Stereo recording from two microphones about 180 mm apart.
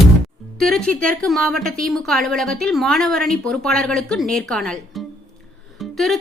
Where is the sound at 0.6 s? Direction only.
Centre (ahead or behind).